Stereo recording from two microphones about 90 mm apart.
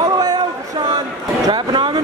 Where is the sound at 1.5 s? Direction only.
65° right (ahead or behind).